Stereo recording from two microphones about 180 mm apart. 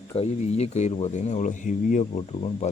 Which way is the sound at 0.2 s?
40° left (ahead or behind).